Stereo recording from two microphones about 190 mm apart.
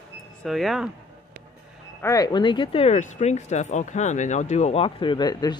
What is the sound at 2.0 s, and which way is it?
Speech, 20° left (ahead or behind).